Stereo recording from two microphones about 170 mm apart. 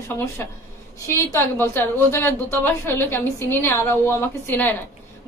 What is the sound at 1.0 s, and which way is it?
A woman's voice, 15° left (ahead or behind).